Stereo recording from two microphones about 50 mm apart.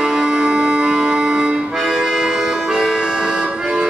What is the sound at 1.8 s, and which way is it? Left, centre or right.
Accordion, centre.